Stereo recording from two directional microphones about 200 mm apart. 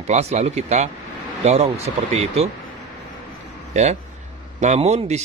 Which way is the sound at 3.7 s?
35° right (ahead or behind).